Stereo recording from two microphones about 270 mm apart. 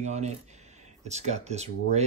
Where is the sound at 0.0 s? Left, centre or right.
Right.